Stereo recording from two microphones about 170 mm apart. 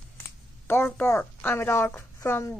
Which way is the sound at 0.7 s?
10° left (ahead or behind).